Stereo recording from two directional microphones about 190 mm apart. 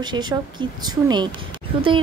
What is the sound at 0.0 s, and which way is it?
Speech, 25° right (ahead or behind).